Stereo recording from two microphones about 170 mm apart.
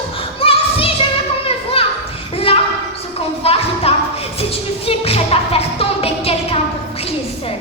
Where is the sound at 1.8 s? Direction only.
35° left (ahead or behind).